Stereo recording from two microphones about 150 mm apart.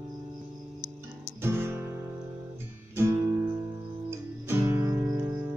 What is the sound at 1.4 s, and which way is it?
Guitar, 15° right (ahead or behind).